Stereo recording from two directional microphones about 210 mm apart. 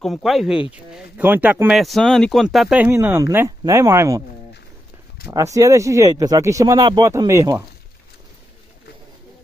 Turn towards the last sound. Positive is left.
turn(degrees=-15)  # may be behind; listen again after turning